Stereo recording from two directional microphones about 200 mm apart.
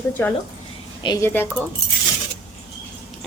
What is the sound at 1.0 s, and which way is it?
Speech, 20° left (ahead or behind).